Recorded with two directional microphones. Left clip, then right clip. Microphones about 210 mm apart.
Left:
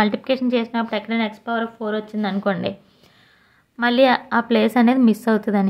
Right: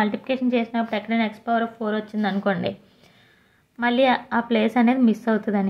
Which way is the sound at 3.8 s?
20° left (ahead or behind).